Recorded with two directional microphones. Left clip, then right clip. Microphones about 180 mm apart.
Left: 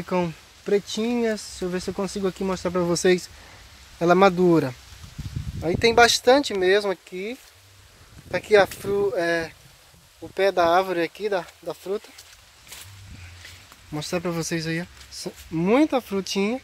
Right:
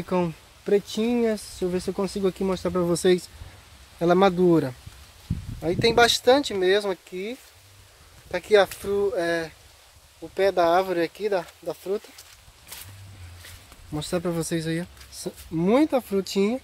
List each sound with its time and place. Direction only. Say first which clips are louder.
0.0 s speech: even; centre (ahead or behind)
13.9 s speech: even; centre (ahead or behind)